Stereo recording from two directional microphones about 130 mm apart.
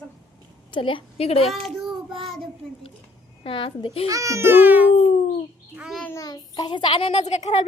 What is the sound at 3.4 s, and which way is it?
Speech, 40° left (ahead or behind).